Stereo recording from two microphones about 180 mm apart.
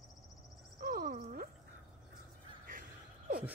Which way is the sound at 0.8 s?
55° right (ahead or behind).